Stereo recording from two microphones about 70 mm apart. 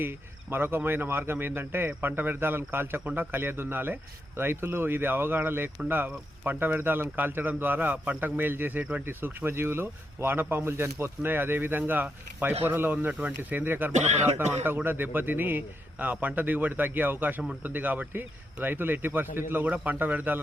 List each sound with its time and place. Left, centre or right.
0.0 s speech: right
9.0 s speech: right